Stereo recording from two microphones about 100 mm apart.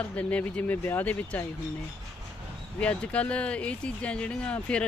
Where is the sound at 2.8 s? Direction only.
10° left (ahead or behind).